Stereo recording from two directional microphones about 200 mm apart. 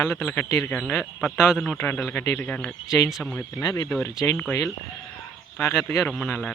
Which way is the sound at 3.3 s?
15° left (ahead or behind).